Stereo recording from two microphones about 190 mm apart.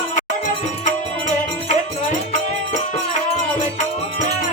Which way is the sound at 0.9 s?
40° left (ahead or behind).